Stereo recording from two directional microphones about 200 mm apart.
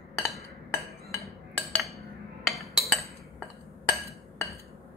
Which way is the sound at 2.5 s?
Centre (ahead or behind).